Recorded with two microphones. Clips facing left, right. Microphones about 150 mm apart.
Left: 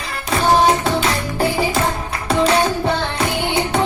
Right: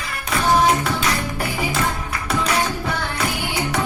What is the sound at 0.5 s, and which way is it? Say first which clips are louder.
Music: left 2 dB; 30° left (ahead or behind).